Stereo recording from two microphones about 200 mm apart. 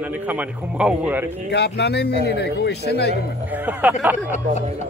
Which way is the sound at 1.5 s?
55° left (ahead or behind).